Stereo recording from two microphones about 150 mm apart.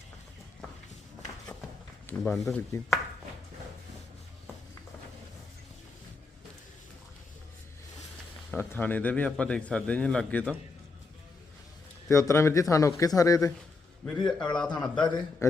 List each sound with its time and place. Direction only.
2.0 s speech: 5° left (ahead or behind)
8.5 s speech: 15° left (ahead or behind)
12.0 s speech: 20° left (ahead or behind)
14.1 s speech: 5° left (ahead or behind)
15.4 s speech: 20° left (ahead or behind)